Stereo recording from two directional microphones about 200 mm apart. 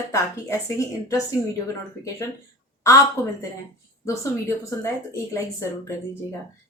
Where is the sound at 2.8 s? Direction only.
15° left (ahead or behind).